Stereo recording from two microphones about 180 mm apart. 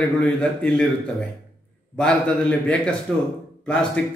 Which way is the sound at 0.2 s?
5° left (ahead or behind).